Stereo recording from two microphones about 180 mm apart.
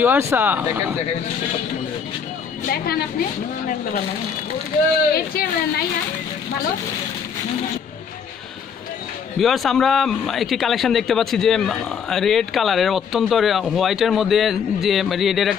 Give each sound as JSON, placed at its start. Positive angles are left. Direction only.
{"t": 0.0, "sound": "speech", "side_deg": -10}
{"t": 2.6, "sound": "speech", "side_deg": 55}
{"t": 5.1, "sound": "speech", "side_deg": 55}
{"t": 9.4, "sound": "a man's voice", "side_deg": 0}